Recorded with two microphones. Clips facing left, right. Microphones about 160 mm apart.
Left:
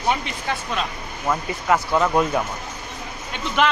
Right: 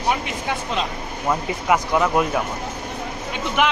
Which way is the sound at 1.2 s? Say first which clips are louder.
Right 1 dB; 10° right (ahead or behind).